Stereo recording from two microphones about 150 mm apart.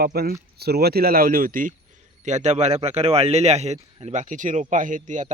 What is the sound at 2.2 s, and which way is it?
A man's voice, 50° right (ahead or behind).